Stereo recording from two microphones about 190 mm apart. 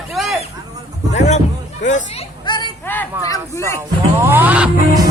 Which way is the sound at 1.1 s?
35° left (ahead or behind).